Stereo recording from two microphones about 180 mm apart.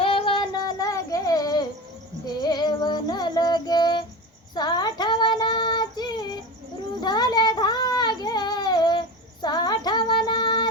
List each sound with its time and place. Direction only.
0.0 s child singing: 30° left (ahead or behind)
2.4 s music: 25° left (ahead or behind)
4.5 s female singing: 25° left (ahead or behind)
7.0 s child singing: 25° left (ahead or behind)